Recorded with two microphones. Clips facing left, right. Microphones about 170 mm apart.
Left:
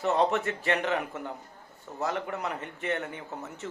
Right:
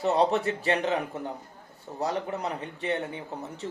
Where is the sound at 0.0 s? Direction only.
35° right (ahead or behind).